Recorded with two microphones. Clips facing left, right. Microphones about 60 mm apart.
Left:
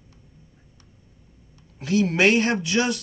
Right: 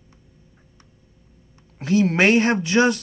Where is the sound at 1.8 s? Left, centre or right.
Right.